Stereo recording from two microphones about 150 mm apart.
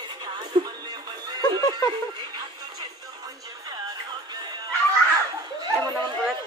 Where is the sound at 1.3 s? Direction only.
30° right (ahead or behind).